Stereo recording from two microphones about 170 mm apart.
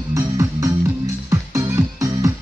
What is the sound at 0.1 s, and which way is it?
Music, 20° right (ahead or behind).